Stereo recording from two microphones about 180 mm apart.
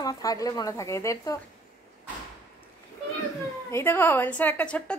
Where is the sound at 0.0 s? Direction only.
20° left (ahead or behind).